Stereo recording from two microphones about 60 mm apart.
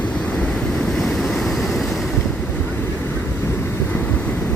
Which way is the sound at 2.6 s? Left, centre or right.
Left.